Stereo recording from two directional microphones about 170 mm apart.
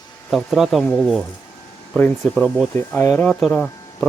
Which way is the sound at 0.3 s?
Centre (ahead or behind).